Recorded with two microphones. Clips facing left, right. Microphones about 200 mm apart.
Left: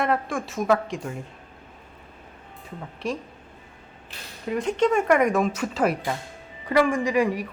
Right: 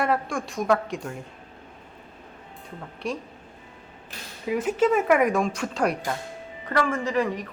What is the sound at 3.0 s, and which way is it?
Speech, centre (ahead or behind).